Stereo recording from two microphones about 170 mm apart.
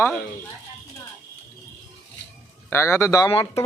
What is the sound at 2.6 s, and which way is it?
Speech, 15° left (ahead or behind).